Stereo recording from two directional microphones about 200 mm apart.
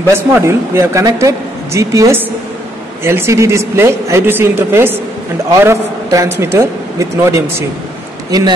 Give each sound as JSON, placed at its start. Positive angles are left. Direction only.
{"t": 0.1, "sound": "a man's voice", "side_deg": -15}